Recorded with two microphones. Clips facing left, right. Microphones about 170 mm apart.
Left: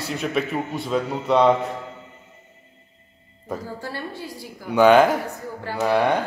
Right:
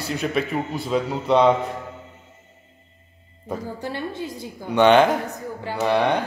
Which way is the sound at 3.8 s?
20° right (ahead or behind).